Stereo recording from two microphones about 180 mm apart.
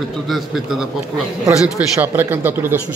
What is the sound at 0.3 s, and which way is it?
A man's voice, centre (ahead or behind).